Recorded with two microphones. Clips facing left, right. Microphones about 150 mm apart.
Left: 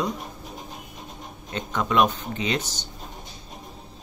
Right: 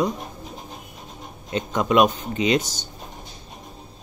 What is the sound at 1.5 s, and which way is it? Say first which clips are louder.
Speech: right 4 dB; 15° right (ahead or behind).